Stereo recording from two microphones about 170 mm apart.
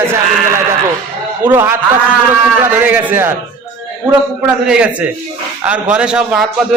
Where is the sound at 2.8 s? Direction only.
10° right (ahead or behind).